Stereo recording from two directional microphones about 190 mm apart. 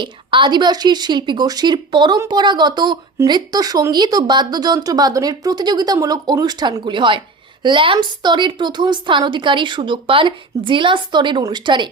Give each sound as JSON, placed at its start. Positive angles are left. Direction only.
{"t": 0.0, "sound": "speech", "side_deg": -25}